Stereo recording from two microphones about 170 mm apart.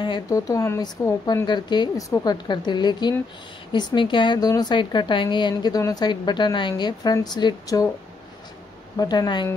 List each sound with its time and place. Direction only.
0.0 s a woman's voice: 25° left (ahead or behind)
8.9 s a woman's voice: 20° left (ahead or behind)